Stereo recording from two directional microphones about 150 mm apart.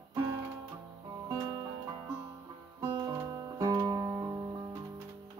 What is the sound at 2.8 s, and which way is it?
Music, 30° right (ahead or behind).